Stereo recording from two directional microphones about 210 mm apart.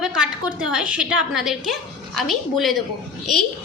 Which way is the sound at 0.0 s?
5° right (ahead or behind).